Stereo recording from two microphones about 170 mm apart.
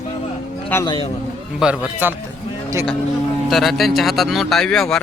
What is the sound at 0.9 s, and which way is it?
Speech, 30° left (ahead or behind).